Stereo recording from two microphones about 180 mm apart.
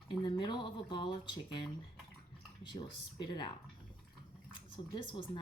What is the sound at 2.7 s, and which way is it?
Speech, 25° left (ahead or behind).